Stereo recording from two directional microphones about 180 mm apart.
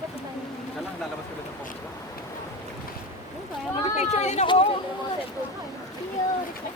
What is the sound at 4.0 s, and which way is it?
Speech, 40° left (ahead or behind).